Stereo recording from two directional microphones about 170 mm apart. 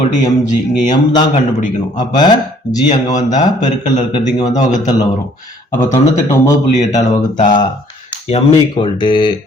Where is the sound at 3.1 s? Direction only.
45° left (ahead or behind).